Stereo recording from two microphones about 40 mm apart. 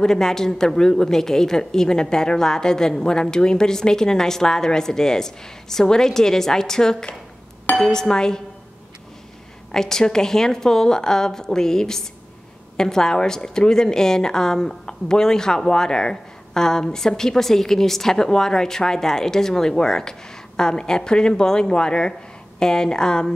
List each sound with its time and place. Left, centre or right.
0.0 s a woman's voice: centre
9.7 s a woman's voice: centre